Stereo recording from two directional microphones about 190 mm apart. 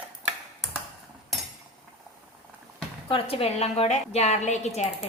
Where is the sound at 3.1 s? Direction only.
30° left (ahead or behind).